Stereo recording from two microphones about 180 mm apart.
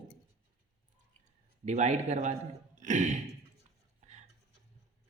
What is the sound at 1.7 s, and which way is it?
Speech, 40° right (ahead or behind).